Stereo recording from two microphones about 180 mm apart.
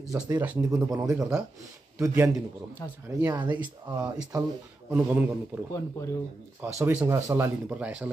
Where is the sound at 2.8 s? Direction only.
15° left (ahead or behind).